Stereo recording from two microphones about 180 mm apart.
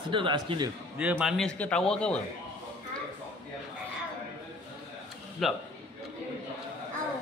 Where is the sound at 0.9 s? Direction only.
5° right (ahead or behind).